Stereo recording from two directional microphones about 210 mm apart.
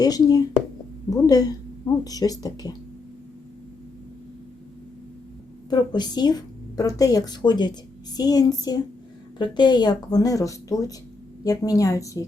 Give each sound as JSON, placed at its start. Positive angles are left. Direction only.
{"t": 0.0, "sound": "speech", "side_deg": 20}
{"t": 5.7, "sound": "a woman's voice", "side_deg": 20}